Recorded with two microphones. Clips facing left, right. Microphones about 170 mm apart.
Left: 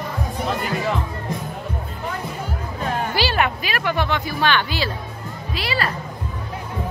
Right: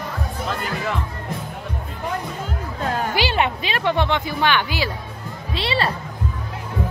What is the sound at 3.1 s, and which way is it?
Music, 20° right (ahead or behind).